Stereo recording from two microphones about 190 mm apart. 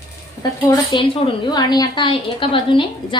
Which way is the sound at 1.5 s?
20° left (ahead or behind).